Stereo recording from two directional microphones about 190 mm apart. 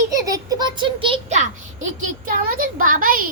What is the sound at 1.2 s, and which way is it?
A child's voice, 40° right (ahead or behind).